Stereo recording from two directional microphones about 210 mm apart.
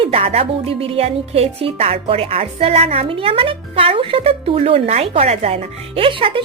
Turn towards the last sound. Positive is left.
turn(degrees=-25)  # may be behind; listen again after turning